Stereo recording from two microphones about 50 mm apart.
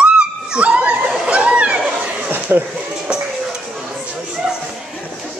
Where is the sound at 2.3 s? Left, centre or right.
Right.